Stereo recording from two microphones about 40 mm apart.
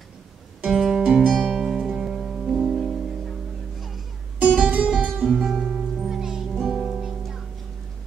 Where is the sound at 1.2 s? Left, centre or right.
Centre.